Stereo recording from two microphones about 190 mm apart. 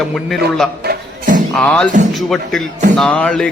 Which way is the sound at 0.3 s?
Centre (ahead or behind).